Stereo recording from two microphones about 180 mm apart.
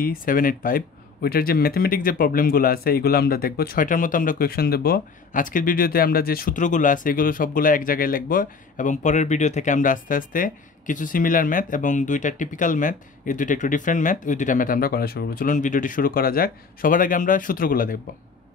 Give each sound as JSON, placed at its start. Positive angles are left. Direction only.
{"t": 0.0, "sound": "speech", "side_deg": 50}